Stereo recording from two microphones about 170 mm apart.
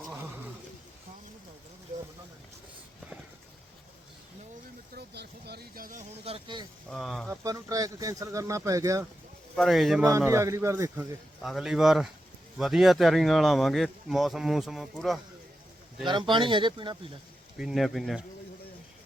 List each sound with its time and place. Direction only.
4.9 s a sound: 75° right (ahead or behind); by 6.1 s 55° right (ahead or behind)
6.2 s speech: 30° right (ahead or behind)
6.9 s speech: centre (ahead or behind)
7.3 s speech: 20° right (ahead or behind)
9.6 s speech: centre (ahead or behind)
10.1 s speech: 15° right (ahead or behind)
11.4 s speech: centre (ahead or behind)
16.0 s speech: 30° right (ahead or behind)
17.6 s speech: centre (ahead or behind)